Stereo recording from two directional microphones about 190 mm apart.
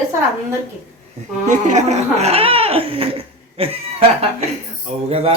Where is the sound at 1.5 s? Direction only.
40° right (ahead or behind).